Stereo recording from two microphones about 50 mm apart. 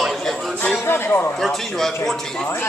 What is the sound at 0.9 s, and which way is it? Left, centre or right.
Speech, left.